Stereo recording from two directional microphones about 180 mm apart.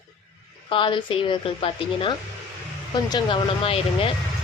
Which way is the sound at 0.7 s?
30° left (ahead or behind).